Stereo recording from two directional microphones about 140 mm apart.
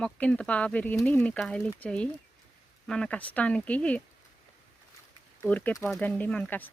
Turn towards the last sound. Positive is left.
turn(degrees=10)  # may be behind; listen again after turning